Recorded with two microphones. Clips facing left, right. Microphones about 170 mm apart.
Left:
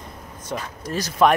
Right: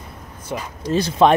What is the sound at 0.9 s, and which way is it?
Speech, 25° right (ahead or behind).